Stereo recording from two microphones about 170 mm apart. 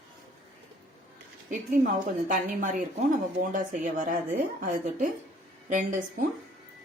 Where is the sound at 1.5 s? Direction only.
50° right (ahead or behind).